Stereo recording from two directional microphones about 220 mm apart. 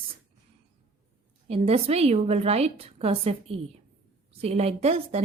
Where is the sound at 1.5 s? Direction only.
30° right (ahead or behind).